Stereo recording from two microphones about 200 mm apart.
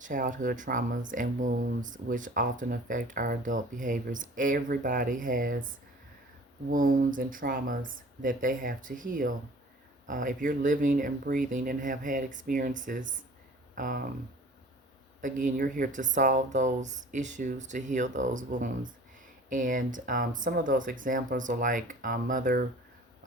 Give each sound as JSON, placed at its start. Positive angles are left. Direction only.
{"t": 0.0, "sound": "speech", "side_deg": -40}
{"t": 15.2, "sound": "speech", "side_deg": -40}